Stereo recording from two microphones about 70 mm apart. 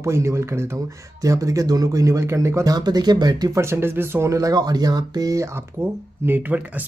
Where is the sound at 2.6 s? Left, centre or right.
Right.